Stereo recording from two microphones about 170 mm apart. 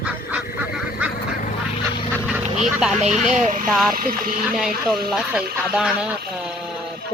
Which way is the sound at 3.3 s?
50° right (ahead or behind).